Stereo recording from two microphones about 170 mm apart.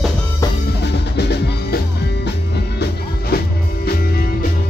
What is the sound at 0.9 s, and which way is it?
Music, 80° left.